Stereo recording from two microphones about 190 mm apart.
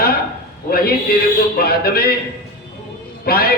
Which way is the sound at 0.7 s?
55° left (ahead or behind).